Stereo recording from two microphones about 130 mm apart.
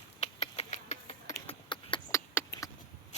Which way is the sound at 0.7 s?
65° left (ahead or behind).